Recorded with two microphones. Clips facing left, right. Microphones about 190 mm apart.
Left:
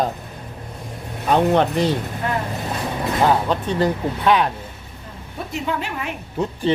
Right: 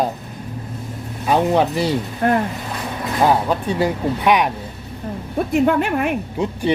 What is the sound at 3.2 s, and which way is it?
Speech, 10° right (ahead or behind).